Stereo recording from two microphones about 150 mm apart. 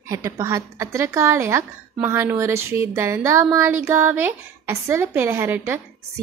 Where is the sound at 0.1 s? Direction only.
20° right (ahead or behind).